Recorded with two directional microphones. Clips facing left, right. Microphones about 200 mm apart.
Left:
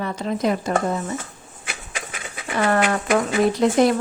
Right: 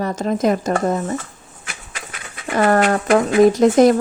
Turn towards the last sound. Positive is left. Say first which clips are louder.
# right 6 dB
turn(degrees=-45)  # may be behind; listen again after turning